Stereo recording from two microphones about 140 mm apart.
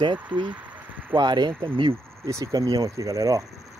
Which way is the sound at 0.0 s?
35° right (ahead or behind).